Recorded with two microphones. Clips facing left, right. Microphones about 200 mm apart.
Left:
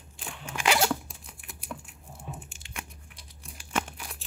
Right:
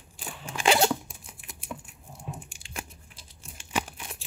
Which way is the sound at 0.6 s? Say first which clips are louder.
Right 3 dB; 30° right (ahead or behind).